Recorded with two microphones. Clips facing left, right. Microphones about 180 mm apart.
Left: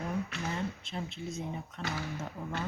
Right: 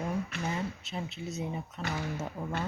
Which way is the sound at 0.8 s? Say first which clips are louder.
Right 1 dB; 5° right (ahead or behind).